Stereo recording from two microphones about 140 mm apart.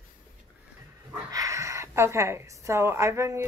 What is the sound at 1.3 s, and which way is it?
A woman's voice, 25° right (ahead or behind).